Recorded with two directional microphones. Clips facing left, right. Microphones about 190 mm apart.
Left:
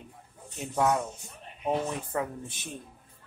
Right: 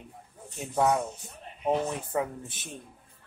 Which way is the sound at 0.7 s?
10° right (ahead or behind).